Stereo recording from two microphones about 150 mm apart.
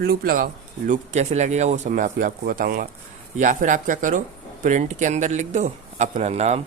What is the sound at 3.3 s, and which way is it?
Speech, 60° right (ahead or behind).